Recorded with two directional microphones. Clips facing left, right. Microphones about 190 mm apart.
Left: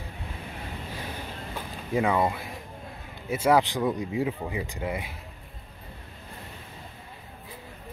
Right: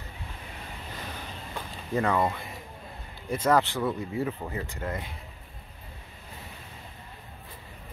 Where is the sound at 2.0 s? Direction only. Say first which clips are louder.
Left 1 dB; 10° left (ahead or behind).